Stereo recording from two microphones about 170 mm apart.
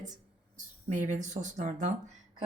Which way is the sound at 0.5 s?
45° right (ahead or behind).